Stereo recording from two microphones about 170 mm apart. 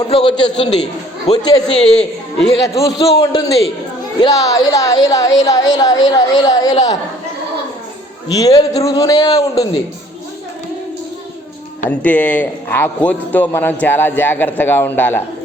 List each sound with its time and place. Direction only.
0.1 s a man's voice: 30° left (ahead or behind)
1.6 s a woman's voice: 5° left (ahead or behind)
2.7 s a man's voice: 20° left (ahead or behind)
8.3 s a man's voice: 20° left (ahead or behind)
11.9 s speech: 10° left (ahead or behind)